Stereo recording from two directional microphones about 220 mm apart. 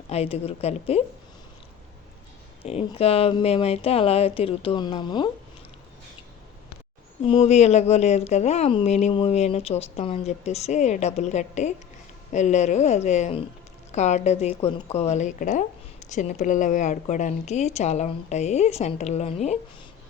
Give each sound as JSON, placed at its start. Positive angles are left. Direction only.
{"t": 0.1, "sound": "speech", "side_deg": 25}
{"t": 2.6, "sound": "speech", "side_deg": 25}
{"t": 7.3, "sound": "speech", "side_deg": 25}